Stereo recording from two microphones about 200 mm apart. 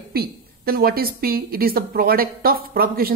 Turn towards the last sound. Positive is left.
turn(degrees=-50)  # may be behind; listen again after turning